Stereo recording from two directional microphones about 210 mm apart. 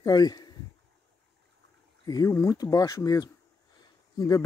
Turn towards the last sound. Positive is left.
turn(degrees=15)  # may be behind; listen again after turning